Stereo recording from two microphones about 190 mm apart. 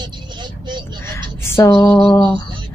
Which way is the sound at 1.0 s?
15° left (ahead or behind).